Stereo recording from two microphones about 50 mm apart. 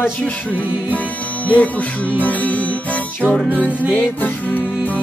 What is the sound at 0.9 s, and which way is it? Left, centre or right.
Music, left.